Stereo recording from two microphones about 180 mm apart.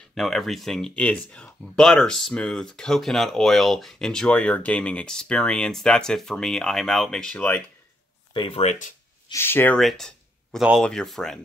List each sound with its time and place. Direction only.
0.1 s speech: centre (ahead or behind)
8.3 s speech: 30° left (ahead or behind)
9.3 s speech: 10° left (ahead or behind)
9.8 s speech: centre (ahead or behind)